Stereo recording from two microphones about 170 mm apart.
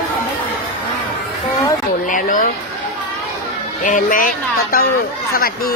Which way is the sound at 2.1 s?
50° left (ahead or behind).